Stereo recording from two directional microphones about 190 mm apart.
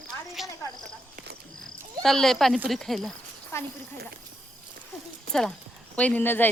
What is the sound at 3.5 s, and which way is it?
Speech, 15° left (ahead or behind).